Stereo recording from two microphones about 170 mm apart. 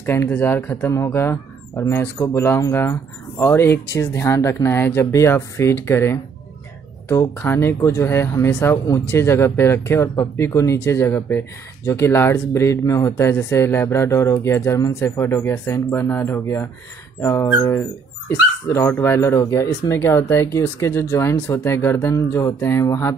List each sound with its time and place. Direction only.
0.0 s speech: 15° left (ahead or behind)